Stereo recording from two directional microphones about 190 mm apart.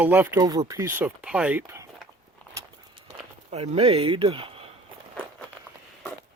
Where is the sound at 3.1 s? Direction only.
35° right (ahead or behind).